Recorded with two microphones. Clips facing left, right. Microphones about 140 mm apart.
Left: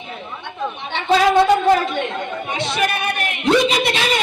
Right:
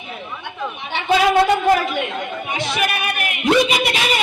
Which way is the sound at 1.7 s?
5° right (ahead or behind).